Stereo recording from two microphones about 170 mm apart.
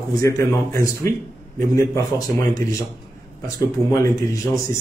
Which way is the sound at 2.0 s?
20° left (ahead or behind).